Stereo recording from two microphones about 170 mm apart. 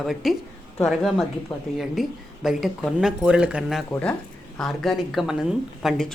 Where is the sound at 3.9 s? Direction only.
10° left (ahead or behind).